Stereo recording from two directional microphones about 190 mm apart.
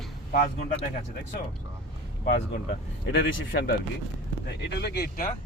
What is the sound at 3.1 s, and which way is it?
Speech, 60° left (ahead or behind).